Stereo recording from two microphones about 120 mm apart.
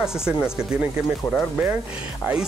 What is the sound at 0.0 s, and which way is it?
Speech, 5° right (ahead or behind).